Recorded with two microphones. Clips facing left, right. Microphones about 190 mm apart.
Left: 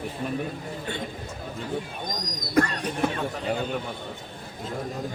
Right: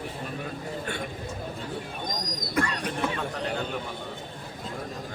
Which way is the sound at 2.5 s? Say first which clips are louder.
Left 5 dB; 45° left (ahead or behind).